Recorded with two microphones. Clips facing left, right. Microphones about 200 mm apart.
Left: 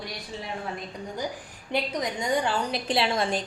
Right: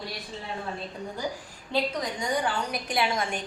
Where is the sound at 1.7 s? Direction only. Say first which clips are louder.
Even; 20° left (ahead or behind).